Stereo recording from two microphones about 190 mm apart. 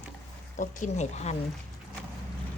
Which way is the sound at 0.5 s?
40° left (ahead or behind).